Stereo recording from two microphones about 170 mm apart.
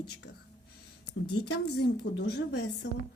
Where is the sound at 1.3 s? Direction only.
75° left (ahead or behind).